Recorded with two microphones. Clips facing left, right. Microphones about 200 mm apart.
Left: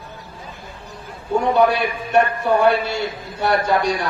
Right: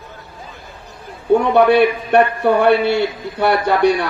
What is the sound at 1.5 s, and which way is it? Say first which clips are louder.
A man's voice: right 5 dB; 60° right (ahead or behind).